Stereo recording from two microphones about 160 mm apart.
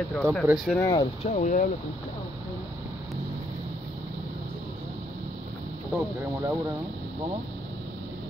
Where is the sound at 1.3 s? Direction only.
55° left (ahead or behind).